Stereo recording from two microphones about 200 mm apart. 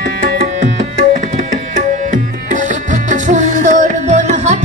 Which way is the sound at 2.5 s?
40° right (ahead or behind).